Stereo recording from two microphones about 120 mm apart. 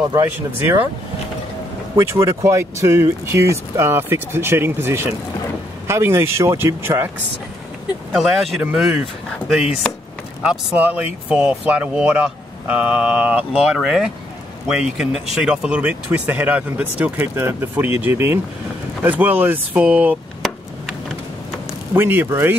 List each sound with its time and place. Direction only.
0.1 s speech: 20° right (ahead or behind)
2.0 s speech: 25° right (ahead or behind)
8.1 s speech: 5° right (ahead or behind)
10.4 s speech: 15° right (ahead or behind)
21.9 s speech: 15° right (ahead or behind)